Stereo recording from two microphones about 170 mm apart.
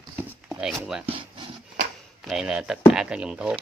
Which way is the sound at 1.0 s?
30° right (ahead or behind).